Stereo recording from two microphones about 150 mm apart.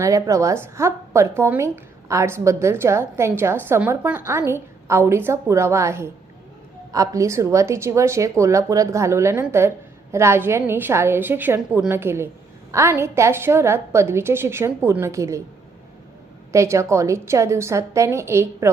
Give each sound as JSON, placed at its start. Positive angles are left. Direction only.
{"t": 0.0, "sound": "a woman's voice", "side_deg": -20}
{"t": 16.5, "sound": "a woman's voice", "side_deg": -20}